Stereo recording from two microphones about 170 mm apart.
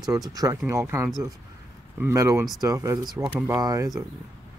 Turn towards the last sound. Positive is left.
turn(degrees=-20)  # may be behind; listen again after turning